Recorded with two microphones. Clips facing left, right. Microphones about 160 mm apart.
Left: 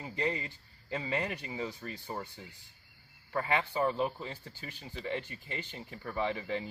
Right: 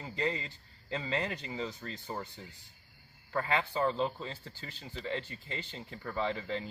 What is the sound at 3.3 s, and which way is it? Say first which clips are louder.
Speech: even; 15° left (ahead or behind).